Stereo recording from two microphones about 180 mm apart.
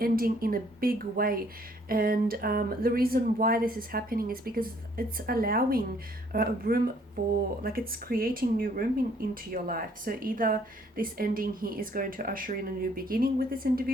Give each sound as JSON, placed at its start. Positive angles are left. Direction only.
{"t": 0.0, "sound": "speech", "side_deg": -55}